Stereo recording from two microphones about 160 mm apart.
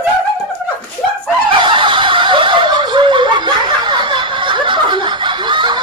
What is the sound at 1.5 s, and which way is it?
Snicker, 30° right (ahead or behind).